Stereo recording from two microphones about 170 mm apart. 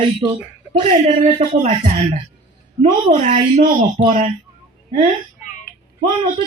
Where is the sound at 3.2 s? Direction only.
45° right (ahead or behind).